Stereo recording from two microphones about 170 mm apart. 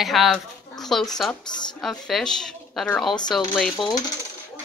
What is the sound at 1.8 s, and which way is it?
A child's voice, centre (ahead or behind).